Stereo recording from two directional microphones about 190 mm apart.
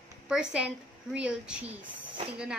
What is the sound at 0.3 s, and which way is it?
Speech, 5° right (ahead or behind).